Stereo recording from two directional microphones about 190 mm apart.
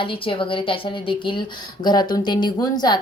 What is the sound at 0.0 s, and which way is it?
A woman's voice, 25° left (ahead or behind).